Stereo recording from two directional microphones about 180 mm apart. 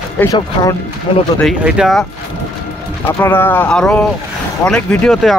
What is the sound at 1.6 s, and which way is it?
Speech, centre (ahead or behind).